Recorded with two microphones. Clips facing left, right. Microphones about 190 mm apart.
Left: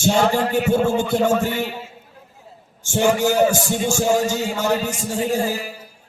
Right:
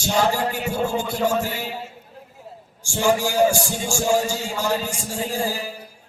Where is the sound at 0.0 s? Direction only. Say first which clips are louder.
Left 3 dB; 25° left (ahead or behind).